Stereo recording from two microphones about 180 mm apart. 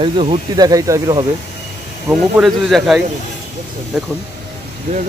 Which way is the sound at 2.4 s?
Centre (ahead or behind).